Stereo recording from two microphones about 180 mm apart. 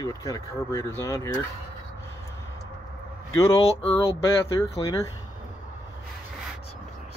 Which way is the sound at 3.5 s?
30° left (ahead or behind).